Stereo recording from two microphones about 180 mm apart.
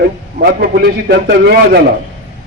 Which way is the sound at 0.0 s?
55° right (ahead or behind).